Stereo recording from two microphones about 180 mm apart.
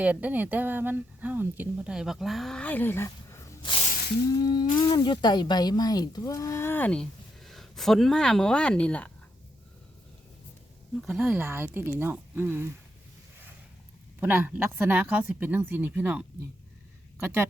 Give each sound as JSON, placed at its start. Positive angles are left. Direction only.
{"t": 0.0, "sound": "speech", "side_deg": -10}
{"t": 3.6, "sound": "snake", "side_deg": 30}
{"t": 3.8, "sound": "a sound", "side_deg": 55}
{"t": 4.3, "sound": "humming", "side_deg": 20}
{"t": 4.7, "sound": "speech", "side_deg": 25}
{"t": 11.0, "sound": "speech", "side_deg": -5}
{"t": 14.2, "sound": "speech", "side_deg": -10}
{"t": 17.2, "sound": "speech", "side_deg": -10}